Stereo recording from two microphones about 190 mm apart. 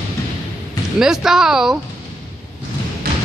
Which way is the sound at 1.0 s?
Centre (ahead or behind).